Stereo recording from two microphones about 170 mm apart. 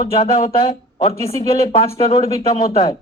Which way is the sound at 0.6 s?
35° left (ahead or behind).